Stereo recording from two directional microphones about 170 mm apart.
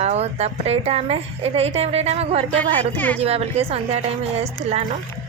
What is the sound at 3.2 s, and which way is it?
A woman's voice, 35° right (ahead or behind).